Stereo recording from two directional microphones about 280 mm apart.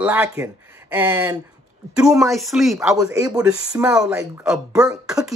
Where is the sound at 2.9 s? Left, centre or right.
Centre.